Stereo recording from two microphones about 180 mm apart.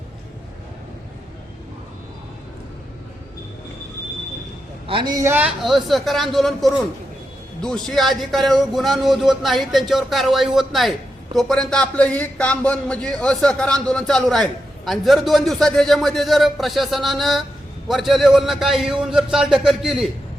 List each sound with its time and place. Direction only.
4.9 s a woman's voice: 25° right (ahead or behind)
5.5 s a man's voice: centre (ahead or behind)